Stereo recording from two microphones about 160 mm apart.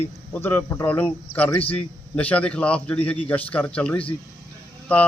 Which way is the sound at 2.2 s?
10° left (ahead or behind).